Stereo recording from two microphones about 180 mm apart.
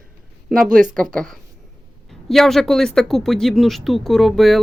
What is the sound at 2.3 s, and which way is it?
Speech, centre (ahead or behind).